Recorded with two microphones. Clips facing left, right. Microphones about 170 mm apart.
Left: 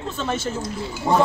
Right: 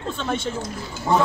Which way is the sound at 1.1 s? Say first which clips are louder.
Left 1 dB; 25° left (ahead or behind).